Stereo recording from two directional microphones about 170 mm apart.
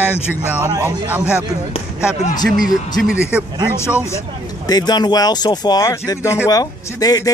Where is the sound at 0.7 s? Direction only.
20° right (ahead or behind).